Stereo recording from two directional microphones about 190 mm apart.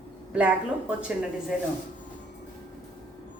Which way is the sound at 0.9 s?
5° right (ahead or behind).